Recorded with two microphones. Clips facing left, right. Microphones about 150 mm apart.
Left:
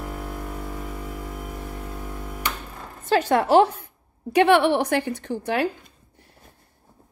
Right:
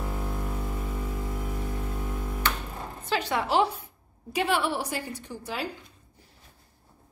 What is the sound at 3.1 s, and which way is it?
A woman's voice, 45° left (ahead or behind).